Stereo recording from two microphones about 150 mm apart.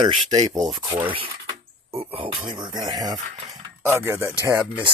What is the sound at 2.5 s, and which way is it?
Speech, 30° right (ahead or behind).